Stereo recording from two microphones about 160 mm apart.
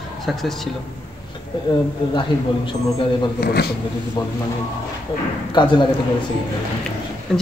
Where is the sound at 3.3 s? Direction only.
80° left.